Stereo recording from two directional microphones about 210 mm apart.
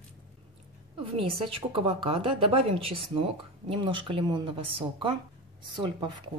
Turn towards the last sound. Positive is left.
turn(degrees=-20)  # may be behind; listen again after turning